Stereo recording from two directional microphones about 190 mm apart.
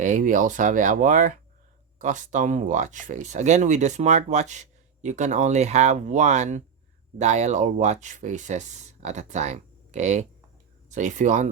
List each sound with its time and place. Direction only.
0.0 s speech: 40° right (ahead or behind)